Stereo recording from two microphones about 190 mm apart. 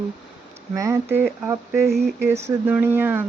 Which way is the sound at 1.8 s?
60° right (ahead or behind).